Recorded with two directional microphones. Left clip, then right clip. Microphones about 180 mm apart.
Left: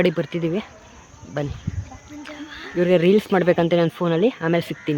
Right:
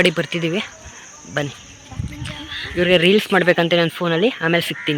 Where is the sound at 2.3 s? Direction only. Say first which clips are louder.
Right 7 dB; 65° left (ahead or behind).